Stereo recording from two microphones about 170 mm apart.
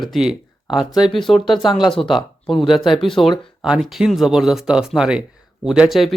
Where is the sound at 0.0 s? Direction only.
Centre (ahead or behind).